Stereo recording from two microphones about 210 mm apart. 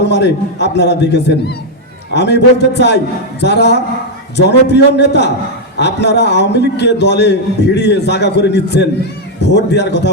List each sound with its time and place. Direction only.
0.0 s a man's voice: 55° left (ahead or behind)